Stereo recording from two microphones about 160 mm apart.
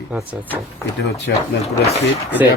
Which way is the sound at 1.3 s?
85° left.